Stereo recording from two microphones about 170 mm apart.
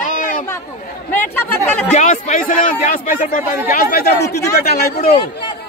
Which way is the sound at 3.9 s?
70° left (ahead or behind).